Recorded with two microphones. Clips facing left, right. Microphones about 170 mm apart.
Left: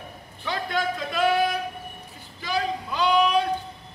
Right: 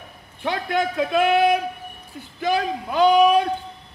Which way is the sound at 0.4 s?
60° right (ahead or behind).